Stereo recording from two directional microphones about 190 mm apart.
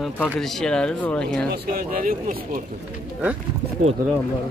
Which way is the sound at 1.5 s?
50° right (ahead or behind).